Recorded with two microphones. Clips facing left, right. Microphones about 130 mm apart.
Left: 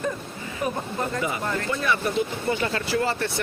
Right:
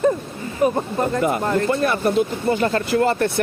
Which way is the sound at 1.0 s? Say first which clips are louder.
Right 8 dB; 55° right (ahead or behind).